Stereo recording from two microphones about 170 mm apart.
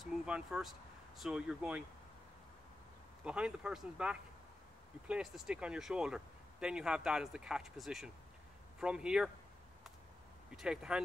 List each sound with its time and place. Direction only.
0.0 s speech: 5° right (ahead or behind)
3.3 s speech: 5° right (ahead or behind)
10.5 s speech: 5° right (ahead or behind)